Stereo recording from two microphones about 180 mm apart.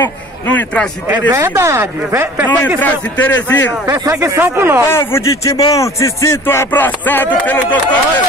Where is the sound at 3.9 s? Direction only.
15° right (ahead or behind).